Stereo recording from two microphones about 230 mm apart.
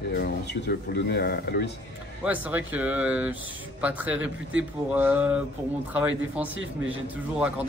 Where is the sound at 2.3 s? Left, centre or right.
Centre.